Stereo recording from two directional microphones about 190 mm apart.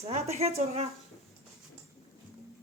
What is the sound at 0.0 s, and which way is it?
Speech, 35° right (ahead or behind).